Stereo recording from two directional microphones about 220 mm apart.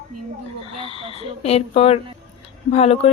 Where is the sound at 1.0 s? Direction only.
25° right (ahead or behind).